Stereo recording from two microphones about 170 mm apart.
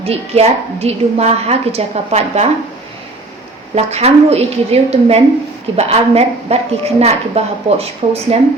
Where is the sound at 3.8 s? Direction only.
40° right (ahead or behind).